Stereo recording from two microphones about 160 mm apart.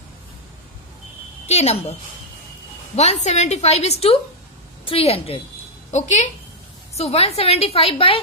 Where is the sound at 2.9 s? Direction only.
45° left (ahead or behind).